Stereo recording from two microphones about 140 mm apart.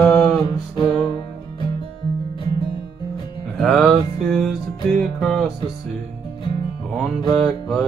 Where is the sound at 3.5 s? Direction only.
5° left (ahead or behind).